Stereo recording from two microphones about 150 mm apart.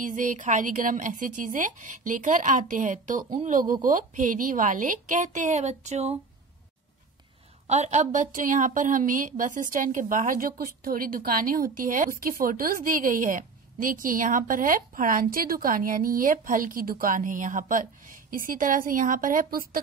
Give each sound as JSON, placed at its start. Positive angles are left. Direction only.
{"t": 0.0, "sound": "a woman's voice", "side_deg": -60}
{"t": 7.6, "sound": "a woman's voice", "side_deg": -45}